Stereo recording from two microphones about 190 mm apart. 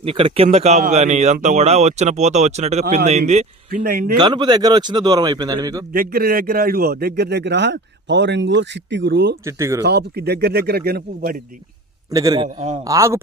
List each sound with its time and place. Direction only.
0.0 s speech: 30° right (ahead or behind); by 4.2 s 50° right (ahead or behind)
4.2 s a man's voice: 25° right (ahead or behind)
5.9 s a man's voice: 50° right (ahead or behind)
9.4 s speech: 15° right (ahead or behind)
9.8 s a man's voice: 60° right (ahead or behind)
12.1 s a man's voice: 20° right (ahead or behind)
12.9 s speech: 15° right (ahead or behind)